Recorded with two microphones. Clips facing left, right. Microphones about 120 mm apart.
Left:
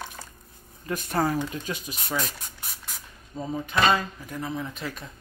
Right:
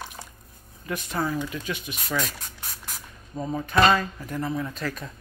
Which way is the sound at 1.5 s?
35° left (ahead or behind).